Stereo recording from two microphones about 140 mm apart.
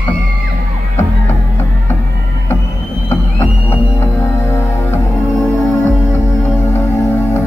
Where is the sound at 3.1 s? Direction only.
15° left (ahead or behind).